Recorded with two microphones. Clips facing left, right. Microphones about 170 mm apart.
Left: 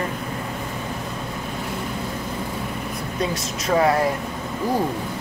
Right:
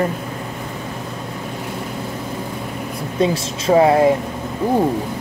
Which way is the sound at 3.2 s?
25° right (ahead or behind).